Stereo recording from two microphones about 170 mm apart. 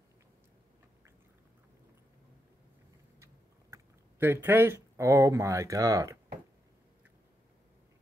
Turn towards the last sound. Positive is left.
turn(degrees=-20)  # may be behind; listen again after turning